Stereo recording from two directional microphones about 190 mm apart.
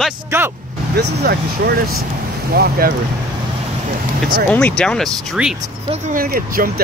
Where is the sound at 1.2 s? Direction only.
55° right (ahead or behind).